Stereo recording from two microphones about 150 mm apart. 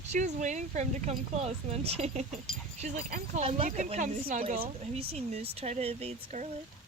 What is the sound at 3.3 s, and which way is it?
Speech, 40° right (ahead or behind).